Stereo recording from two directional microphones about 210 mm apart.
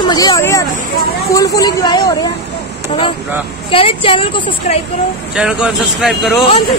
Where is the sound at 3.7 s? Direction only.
25° left (ahead or behind).